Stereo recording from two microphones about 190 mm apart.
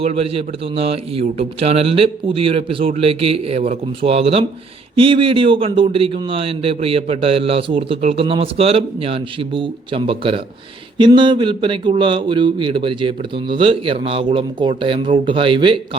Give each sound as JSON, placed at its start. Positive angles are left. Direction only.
{"t": 0.0, "sound": "a man's voice", "side_deg": -30}